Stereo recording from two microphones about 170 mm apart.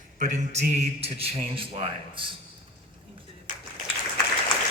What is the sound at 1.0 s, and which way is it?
A man's voice, 35° right (ahead or behind).